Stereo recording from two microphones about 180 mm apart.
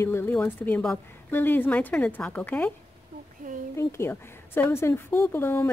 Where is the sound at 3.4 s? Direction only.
45° right (ahead or behind).